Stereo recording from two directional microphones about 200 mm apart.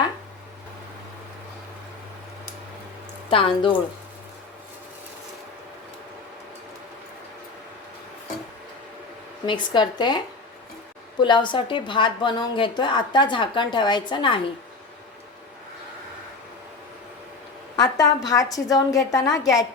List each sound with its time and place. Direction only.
3.2 s a woman's voice: 25° left (ahead or behind)
9.5 s a woman's voice: 20° left (ahead or behind)
11.2 s a woman's voice: 25° left (ahead or behind)
17.7 s a woman's voice: 20° left (ahead or behind)